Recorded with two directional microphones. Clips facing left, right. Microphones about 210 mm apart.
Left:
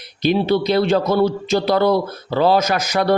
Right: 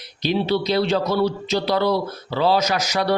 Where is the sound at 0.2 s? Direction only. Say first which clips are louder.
Left 4 dB; 50° left (ahead or behind).